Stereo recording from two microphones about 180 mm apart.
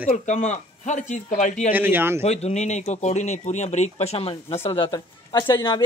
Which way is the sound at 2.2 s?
35° left (ahead or behind).